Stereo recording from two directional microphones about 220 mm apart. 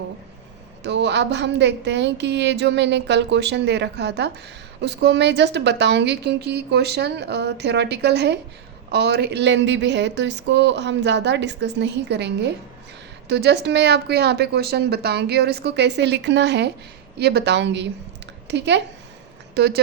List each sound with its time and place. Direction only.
0.8 s a woman's voice: 50° right (ahead or behind)